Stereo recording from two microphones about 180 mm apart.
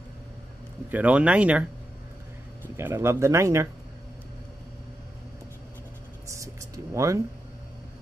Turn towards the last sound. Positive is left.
turn(degrees=-15)  # may be behind; listen again after turning